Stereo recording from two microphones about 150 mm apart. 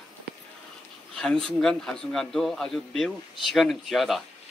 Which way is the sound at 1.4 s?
5° left (ahead or behind).